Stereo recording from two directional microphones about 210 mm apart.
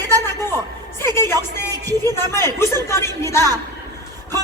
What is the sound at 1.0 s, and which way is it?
Speech, 10° left (ahead or behind).